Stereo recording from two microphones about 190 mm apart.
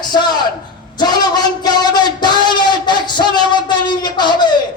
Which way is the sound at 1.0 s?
20° left (ahead or behind).